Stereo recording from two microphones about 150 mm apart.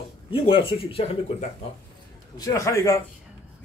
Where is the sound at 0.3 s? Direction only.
35° left (ahead or behind).